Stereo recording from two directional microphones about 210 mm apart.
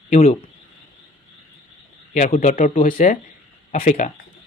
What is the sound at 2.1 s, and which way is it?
Speech, 35° left (ahead or behind).